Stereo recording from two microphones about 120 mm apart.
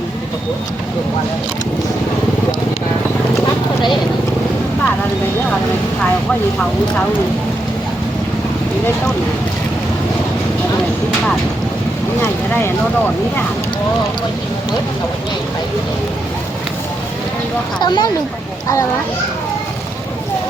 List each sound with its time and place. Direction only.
12.2 s speech: 20° left (ahead or behind)
17.7 s speech: 40° left (ahead or behind)